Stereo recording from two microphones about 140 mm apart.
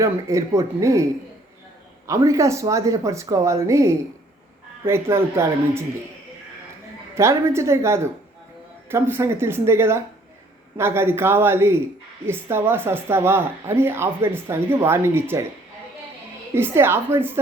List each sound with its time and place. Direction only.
0.0 s speech: 20° right (ahead or behind)
2.0 s speech: 20° right (ahead or behind)
7.2 s speech: 20° right (ahead or behind)
16.6 s speech: 15° right (ahead or behind)